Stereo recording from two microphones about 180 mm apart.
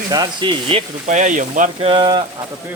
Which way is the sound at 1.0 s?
45° right (ahead or behind).